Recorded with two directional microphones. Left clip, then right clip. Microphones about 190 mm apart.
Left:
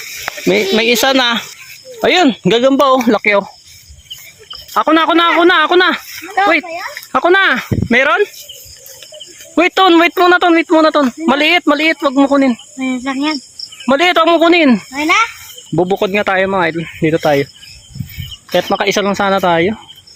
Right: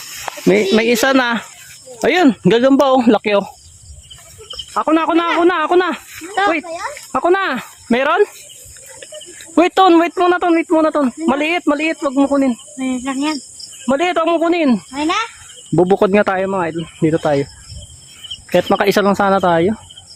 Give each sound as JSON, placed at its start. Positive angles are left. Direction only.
{"t": 0.4, "sound": "speech", "side_deg": -15}
{"t": 4.7, "sound": "speech", "side_deg": 15}
{"t": 9.6, "sound": "speech", "side_deg": -10}
{"t": 10.0, "sound": "speech", "side_deg": 10}
{"t": 12.8, "sound": "cricket", "side_deg": 50}
{"t": 13.8, "sound": "speech", "side_deg": 25}
{"t": 14.7, "sound": "speech", "side_deg": 10}
{"t": 15.8, "sound": "speech", "side_deg": -30}
{"t": 16.5, "sound": "speech", "side_deg": 10}
{"t": 17.0, "sound": "speech", "side_deg": -5}
{"t": 18.5, "sound": "speech", "side_deg": -30}
{"t": 19.1, "sound": "speech", "side_deg": -10}